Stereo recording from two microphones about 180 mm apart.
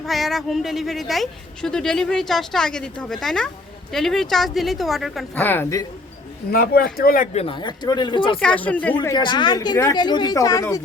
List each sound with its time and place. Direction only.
0.0 s a woman's voice: centre (ahead or behind)
6.5 s speech: 55° left (ahead or behind)
7.3 s speech: 30° left (ahead or behind)
8.4 s speech: 5° left (ahead or behind)
9.0 s speech: 25° left (ahead or behind)